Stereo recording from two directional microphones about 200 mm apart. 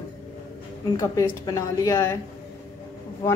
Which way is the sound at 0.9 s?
15° left (ahead or behind).